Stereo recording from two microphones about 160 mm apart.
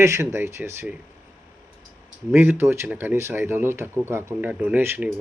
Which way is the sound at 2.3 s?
15° right (ahead or behind).